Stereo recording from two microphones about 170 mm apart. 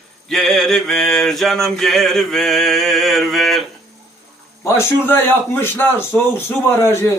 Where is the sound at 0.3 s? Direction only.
5° left (ahead or behind).